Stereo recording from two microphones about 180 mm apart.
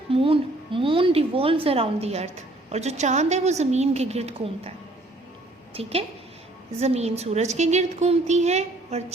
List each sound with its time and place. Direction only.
0.1 s a woman's voice: 30° right (ahead or behind)
5.7 s a woman's voice: 35° right (ahead or behind)